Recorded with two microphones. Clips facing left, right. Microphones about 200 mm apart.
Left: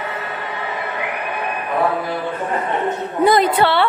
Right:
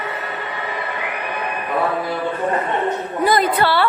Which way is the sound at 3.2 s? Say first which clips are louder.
Left 2 dB; 25° left (ahead or behind).